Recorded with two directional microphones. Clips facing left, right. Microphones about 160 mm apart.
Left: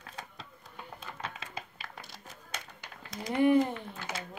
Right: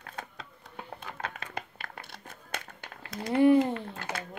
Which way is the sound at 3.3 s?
30° right (ahead or behind).